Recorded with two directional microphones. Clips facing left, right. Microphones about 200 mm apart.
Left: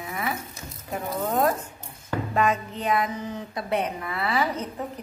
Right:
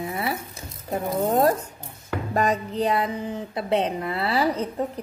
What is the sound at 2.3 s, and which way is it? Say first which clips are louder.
A woman's voice: right 3 dB; 35° right (ahead or behind).